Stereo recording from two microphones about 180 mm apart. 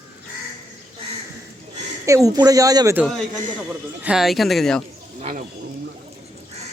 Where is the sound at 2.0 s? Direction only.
20° right (ahead or behind).